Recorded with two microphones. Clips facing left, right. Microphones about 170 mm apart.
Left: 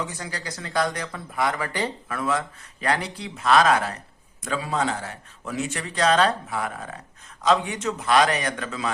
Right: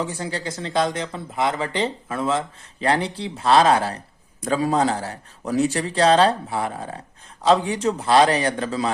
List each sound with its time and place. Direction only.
0.0 s speech: 30° right (ahead or behind)